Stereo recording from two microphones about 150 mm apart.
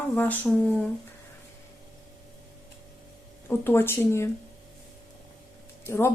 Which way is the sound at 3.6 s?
15° left (ahead or behind).